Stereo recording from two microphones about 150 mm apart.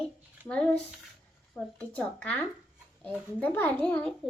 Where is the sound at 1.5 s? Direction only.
10° left (ahead or behind).